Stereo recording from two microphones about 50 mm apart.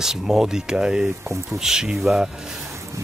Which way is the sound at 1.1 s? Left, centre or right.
Right.